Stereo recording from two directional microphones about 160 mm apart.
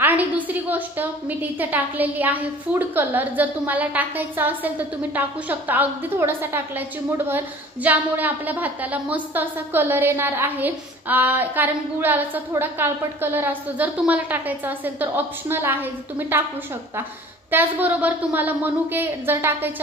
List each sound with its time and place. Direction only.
0.0 s a woman's voice: 10° right (ahead or behind)
17.5 s a woman's voice: 10° right (ahead or behind)